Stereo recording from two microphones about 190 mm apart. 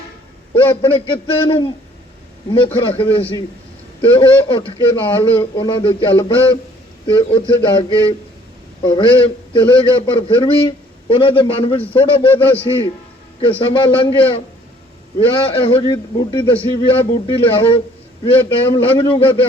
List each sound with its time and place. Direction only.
0.8 s a man's voice: 30° left (ahead or behind)